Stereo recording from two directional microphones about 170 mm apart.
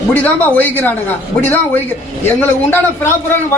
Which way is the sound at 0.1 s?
10° left (ahead or behind).